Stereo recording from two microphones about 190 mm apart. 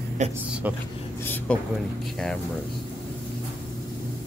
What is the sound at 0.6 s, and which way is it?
Speech, 10° right (ahead or behind).